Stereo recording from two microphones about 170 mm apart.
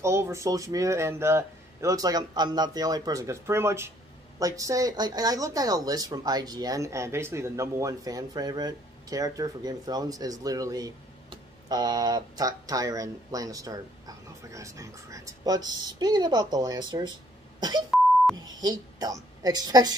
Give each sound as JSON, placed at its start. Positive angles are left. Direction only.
{"t": 0.0, "sound": "speech", "side_deg": -15}
{"t": 17.6, "sound": "beep", "side_deg": -25}
{"t": 18.3, "sound": "speech", "side_deg": -20}